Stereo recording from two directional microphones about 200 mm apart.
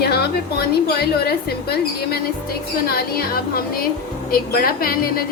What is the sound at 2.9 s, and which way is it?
A woman's voice, 50° left (ahead or behind).